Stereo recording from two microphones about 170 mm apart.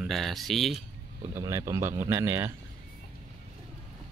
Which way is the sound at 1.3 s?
20° right (ahead or behind).